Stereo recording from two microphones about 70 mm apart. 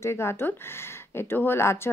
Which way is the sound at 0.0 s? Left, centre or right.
Left.